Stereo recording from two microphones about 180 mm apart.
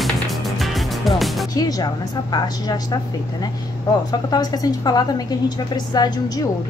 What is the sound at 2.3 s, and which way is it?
Speech, 20° left (ahead or behind).